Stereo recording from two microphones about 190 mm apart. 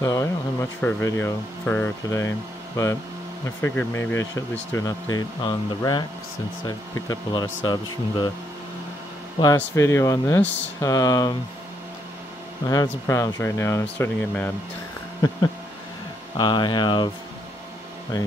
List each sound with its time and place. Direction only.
0.0 s speech: 15° left (ahead or behind)
9.8 s speech: 15° left (ahead or behind)
12.6 s speech: 15° left (ahead or behind)
16.3 s speech: 25° left (ahead or behind)